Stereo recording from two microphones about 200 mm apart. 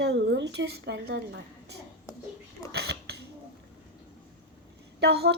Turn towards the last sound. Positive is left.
turn(degrees=-55)  # may be behind; listen again after turning